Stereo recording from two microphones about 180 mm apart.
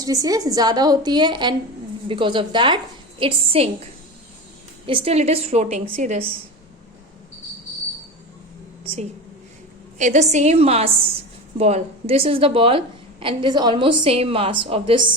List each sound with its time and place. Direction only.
0.0 s a woman's voice: 20° right (ahead or behind)
4.9 s a woman's voice: 30° right (ahead or behind)
10.0 s a woman's voice: 40° right (ahead or behind)